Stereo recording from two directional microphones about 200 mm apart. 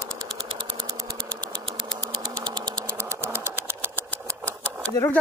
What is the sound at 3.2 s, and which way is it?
Engine, 10° right (ahead or behind).